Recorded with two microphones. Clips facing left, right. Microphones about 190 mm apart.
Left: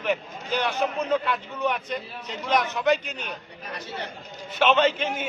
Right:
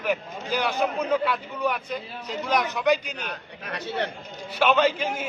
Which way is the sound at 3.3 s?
65° right (ahead or behind).